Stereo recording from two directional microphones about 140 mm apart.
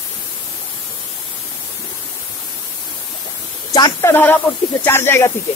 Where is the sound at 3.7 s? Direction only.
25° left (ahead or behind).